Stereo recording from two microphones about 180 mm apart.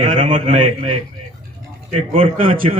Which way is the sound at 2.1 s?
30° right (ahead or behind).